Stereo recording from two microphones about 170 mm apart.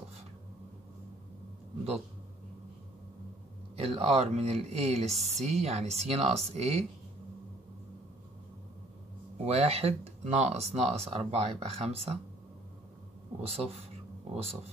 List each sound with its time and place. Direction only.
3.7 s speech: 35° right (ahead or behind)
9.4 s speech: 35° right (ahead or behind)
13.4 s speech: 35° right (ahead or behind)